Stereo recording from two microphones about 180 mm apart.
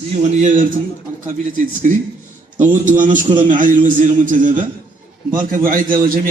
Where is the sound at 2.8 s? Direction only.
45° right (ahead or behind).